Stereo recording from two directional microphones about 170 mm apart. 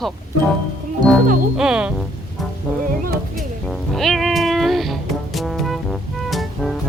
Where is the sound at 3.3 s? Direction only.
Centre (ahead or behind).